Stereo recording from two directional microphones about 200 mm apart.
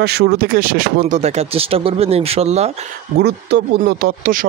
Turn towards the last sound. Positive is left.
turn(degrees=-45)  # may be behind; listen again after turning